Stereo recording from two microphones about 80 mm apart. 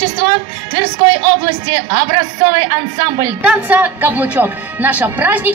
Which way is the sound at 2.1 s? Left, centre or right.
Right.